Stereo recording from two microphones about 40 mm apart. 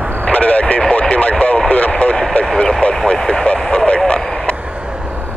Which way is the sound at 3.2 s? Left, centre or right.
Left.